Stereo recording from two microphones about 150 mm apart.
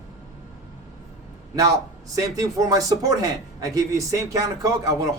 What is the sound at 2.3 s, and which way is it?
Speech, 25° right (ahead or behind).